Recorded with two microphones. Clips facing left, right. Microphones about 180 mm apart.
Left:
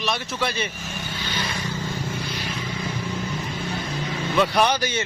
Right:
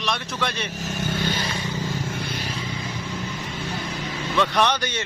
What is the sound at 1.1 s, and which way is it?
Vehicle, 45° right (ahead or behind).